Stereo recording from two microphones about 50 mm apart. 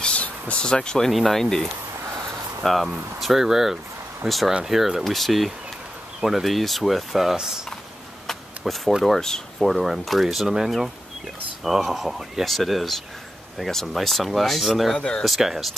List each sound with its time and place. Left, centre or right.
0.0 s a sound: left
1.1 s speech: centre
8.3 s a sound: centre
9.0 s speech: centre
11.6 s speech: centre
15.0 s speech: centre
15.2 s speech: centre